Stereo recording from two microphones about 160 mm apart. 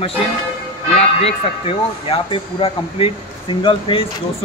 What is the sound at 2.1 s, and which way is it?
Speech, 35° left (ahead or behind).